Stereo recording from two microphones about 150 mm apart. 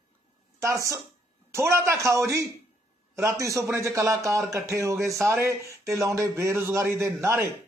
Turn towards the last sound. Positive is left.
turn(degrees=-20)  # may be behind; listen again after turning